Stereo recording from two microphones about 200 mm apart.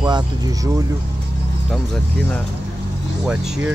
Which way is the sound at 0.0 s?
20° right (ahead or behind).